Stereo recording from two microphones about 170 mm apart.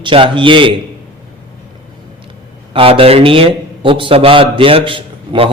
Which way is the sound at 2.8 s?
35° right (ahead or behind).